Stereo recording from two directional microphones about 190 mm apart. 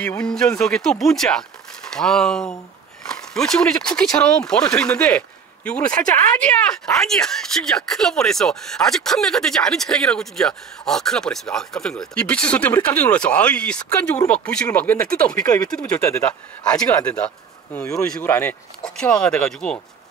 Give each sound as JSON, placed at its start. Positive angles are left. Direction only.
{"t": 0.0, "sound": "speech", "side_deg": 5}
{"t": 15.7, "sound": "speech", "side_deg": 10}